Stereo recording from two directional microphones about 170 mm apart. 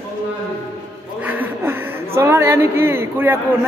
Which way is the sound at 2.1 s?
15° right (ahead or behind).